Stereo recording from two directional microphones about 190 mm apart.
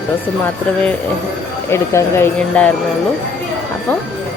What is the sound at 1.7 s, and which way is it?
Speech, 15° left (ahead or behind).